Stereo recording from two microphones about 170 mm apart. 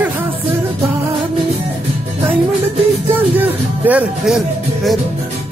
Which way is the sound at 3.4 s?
10° right (ahead or behind).